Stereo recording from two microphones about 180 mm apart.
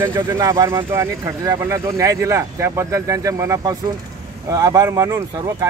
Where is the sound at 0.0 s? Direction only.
15° right (ahead or behind).